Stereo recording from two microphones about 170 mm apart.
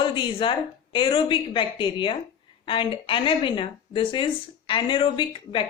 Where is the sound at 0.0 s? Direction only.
30° left (ahead or behind).